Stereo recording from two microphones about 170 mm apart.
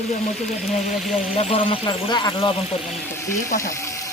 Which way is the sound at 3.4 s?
55° left (ahead or behind).